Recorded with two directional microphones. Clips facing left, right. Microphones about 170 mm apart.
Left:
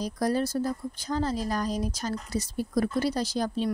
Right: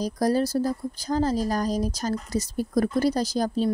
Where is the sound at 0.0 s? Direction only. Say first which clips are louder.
Right 4 dB; 40° right (ahead or behind).